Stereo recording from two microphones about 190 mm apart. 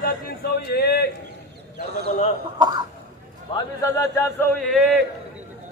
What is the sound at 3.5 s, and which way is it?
Speech, 15° left (ahead or behind).